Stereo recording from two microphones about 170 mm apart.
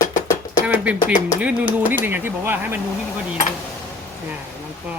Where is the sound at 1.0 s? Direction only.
50° left (ahead or behind).